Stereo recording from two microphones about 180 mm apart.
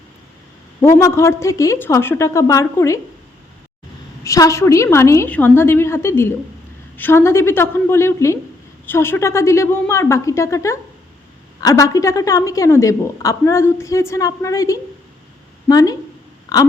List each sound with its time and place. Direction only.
0.8 s a woman's voice: 15° left (ahead or behind)
4.2 s a woman's voice: 20° left (ahead or behind)